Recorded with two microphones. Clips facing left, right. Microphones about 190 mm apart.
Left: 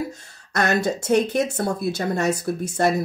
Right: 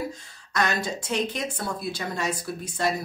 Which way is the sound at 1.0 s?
45° left (ahead or behind).